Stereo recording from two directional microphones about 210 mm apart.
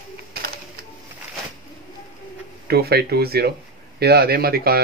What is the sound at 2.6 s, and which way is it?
Speech, 50° right (ahead or behind).